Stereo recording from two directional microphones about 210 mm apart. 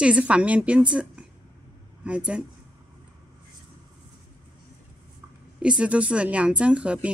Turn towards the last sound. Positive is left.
turn(degrees=-5)  # may be behind; listen again after turning